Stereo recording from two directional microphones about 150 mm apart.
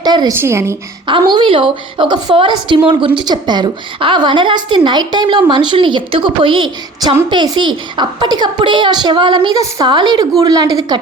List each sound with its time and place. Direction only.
0.0 s a woman's voice: 30° right (ahead or behind)
0.3 s a woman's voice: 20° right (ahead or behind)
1.0 s a woman's voice: 30° right (ahead or behind)